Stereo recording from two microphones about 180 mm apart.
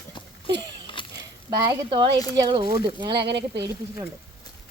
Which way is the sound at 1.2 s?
25° right (ahead or behind).